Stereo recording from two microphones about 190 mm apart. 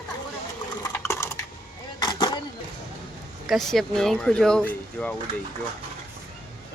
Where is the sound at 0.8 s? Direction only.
15° left (ahead or behind).